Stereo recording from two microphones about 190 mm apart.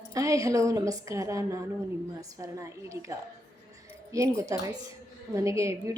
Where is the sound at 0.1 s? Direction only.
15° right (ahead or behind).